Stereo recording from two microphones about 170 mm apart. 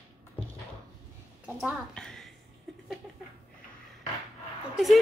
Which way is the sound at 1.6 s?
Centre (ahead or behind).